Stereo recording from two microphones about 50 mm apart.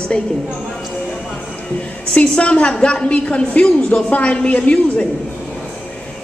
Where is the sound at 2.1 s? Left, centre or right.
Left.